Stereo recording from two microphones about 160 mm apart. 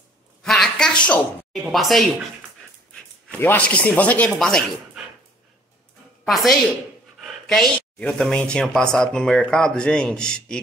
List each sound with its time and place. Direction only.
0.4 s a sound: 5° left (ahead or behind)
2.9 s speech: 10° left (ahead or behind)
6.2 s speech: centre (ahead or behind)